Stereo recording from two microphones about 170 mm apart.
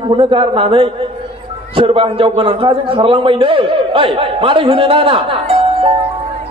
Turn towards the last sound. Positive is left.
turn(degrees=-35)  # may be behind; listen again after turning